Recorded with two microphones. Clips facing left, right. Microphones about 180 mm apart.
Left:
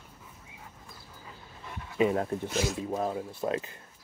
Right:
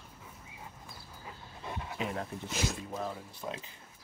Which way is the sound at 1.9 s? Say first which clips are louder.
Left 12 dB; 55° left (ahead or behind).